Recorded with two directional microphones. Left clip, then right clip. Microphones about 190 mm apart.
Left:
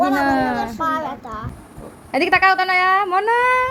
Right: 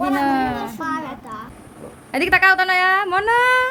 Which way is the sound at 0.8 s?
20° left (ahead or behind).